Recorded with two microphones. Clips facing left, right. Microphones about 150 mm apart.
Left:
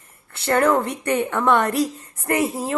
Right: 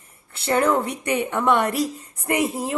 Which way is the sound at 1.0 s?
15° right (ahead or behind).